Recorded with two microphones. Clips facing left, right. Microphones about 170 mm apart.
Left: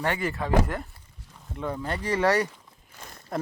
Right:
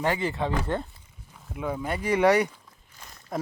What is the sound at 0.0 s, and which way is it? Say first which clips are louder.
Speech: right 2 dB; 20° right (ahead or behind).